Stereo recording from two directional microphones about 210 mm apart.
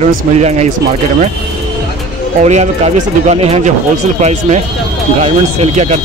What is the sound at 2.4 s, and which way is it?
Speech, 30° right (ahead or behind).